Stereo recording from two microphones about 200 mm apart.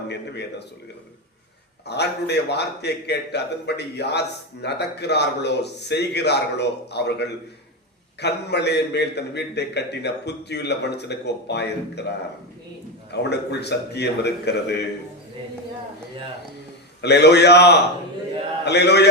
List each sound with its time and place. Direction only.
1.9 s a man's voice: 55° left (ahead or behind)
17.0 s a man's voice: 55° left (ahead or behind)